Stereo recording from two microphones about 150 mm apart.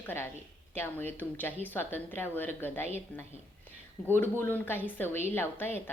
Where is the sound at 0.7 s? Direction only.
15° left (ahead or behind).